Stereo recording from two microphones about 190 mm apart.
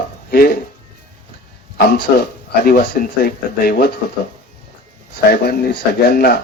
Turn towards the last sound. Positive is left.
turn(degrees=55)  # may be behind; listen again after turning